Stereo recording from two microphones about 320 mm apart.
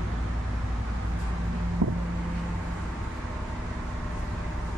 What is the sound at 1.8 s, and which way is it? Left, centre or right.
Vehicle, right.